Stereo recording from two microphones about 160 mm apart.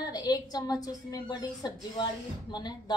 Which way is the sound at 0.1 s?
25° left (ahead or behind).